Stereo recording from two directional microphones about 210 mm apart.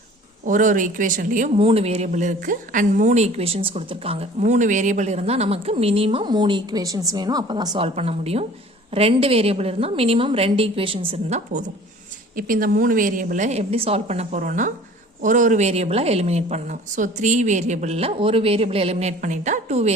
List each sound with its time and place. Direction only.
0.4 s a woman's voice: 40° right (ahead or behind)
1.5 s a woman's voice: 30° right (ahead or behind)